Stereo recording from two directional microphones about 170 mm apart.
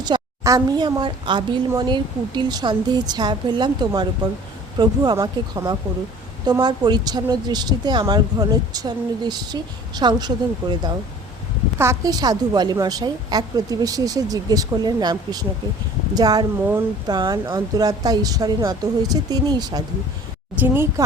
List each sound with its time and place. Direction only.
0.0 s a woman's voice: 20° right (ahead or behind)